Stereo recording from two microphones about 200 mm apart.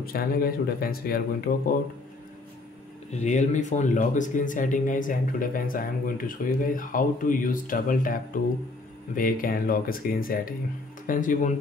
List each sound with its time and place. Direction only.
0.0 s speech: 50° left (ahead or behind)
3.1 s speech: 35° left (ahead or behind)